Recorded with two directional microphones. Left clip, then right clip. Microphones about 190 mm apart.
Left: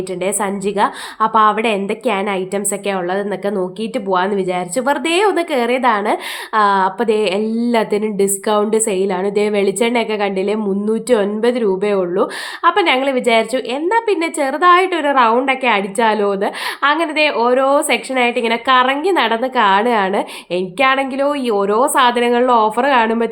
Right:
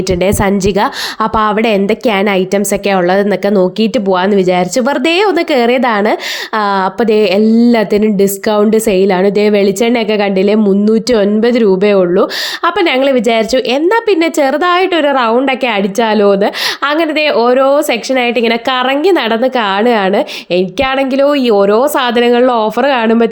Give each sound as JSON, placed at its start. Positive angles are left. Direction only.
{"t": 0.3, "sound": "a woman's voice", "side_deg": -40}